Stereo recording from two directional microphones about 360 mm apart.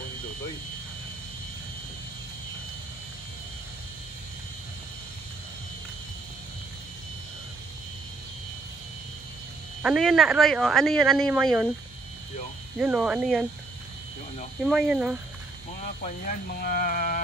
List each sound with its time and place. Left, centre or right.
9.8 s speech: centre
12.7 s speech: centre
14.6 s speech: centre
16.0 s speech: left